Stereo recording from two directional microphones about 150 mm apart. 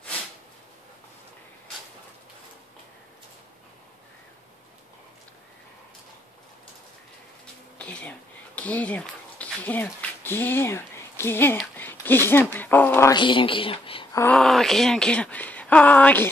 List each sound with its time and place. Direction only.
7.8 s a sound: 10° left (ahead or behind)
12.5 s speech: 10° left (ahead or behind)
13.1 s speech: 35° left (ahead or behind)
14.1 s speech: 10° left (ahead or behind)